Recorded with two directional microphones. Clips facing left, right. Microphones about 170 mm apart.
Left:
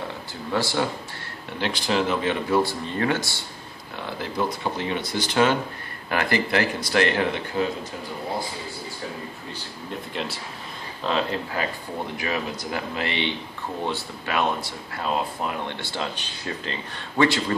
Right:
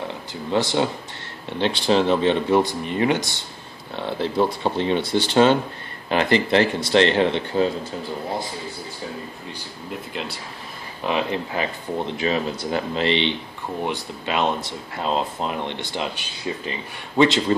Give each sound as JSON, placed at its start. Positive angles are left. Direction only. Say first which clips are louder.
{"t": 0.5, "sound": "speech", "louder": "right 4 dB", "side_deg": -20}
{"t": 3.9, "sound": "speech", "louder": "right 6 dB", "side_deg": -30}
{"t": 9.8, "sound": "speech", "louder": "even", "side_deg": 0}
{"t": 11.1, "sound": "speech", "louder": "right 2 dB", "side_deg": -15}
{"t": 12.9, "sound": "speech", "louder": "right 7 dB", "side_deg": -25}